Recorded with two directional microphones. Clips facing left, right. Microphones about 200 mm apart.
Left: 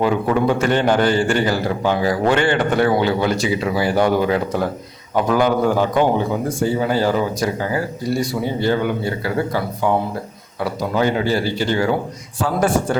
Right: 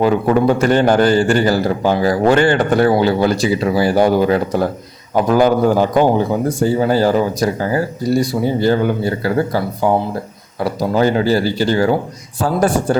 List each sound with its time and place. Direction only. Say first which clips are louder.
0.0 s a man's voice: right 4 dB; 40° right (ahead or behind)